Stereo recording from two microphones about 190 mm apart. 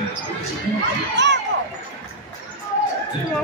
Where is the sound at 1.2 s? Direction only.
65° right (ahead or behind).